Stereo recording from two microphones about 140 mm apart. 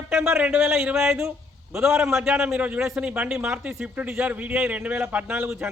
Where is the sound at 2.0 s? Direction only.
5° right (ahead or behind).